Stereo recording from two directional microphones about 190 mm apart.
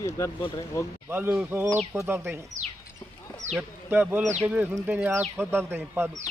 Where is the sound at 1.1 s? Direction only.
10° right (ahead or behind).